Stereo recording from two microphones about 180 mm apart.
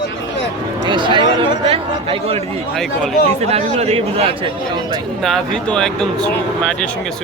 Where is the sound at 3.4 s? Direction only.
35° right (ahead or behind).